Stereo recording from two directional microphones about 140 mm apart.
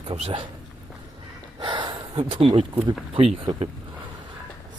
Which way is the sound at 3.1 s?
40° right (ahead or behind).